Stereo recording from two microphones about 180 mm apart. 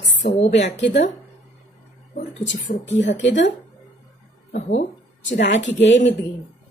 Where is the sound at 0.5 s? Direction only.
75° left (ahead or behind).